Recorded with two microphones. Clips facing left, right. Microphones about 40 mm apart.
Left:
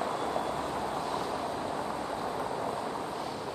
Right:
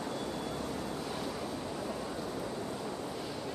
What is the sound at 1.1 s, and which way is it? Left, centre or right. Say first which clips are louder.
Vehicle: left 5 dB; left.